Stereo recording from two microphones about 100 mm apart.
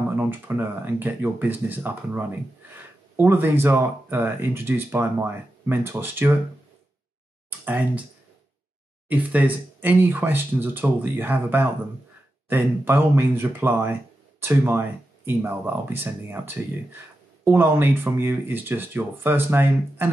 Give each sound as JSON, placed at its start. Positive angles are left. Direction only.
{"t": 0.2, "sound": "speech", "side_deg": -20}
{"t": 7.4, "sound": "speech", "side_deg": -15}
{"t": 9.1, "sound": "speech", "side_deg": -15}